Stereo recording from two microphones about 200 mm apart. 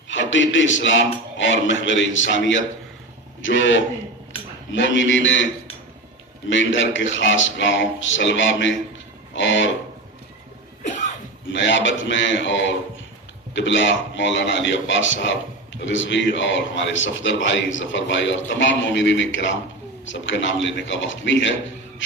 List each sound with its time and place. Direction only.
0.1 s a man's voice: 70° left (ahead or behind)
6.5 s a man's voice: 70° left (ahead or behind)
9.3 s music: 65° left (ahead or behind)
10.8 s cough: 35° left (ahead or behind)
11.5 s a man's voice: 65° left (ahead or behind)